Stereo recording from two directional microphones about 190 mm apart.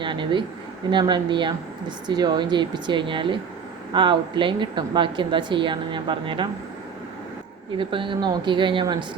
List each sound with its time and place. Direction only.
0.0 s speech: 25° right (ahead or behind)
7.8 s speech: 25° right (ahead or behind)